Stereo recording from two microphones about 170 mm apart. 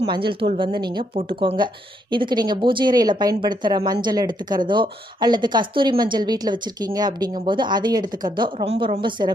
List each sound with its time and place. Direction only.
0.1 s speech: 30° right (ahead or behind)
8.5 s speech: 35° right (ahead or behind)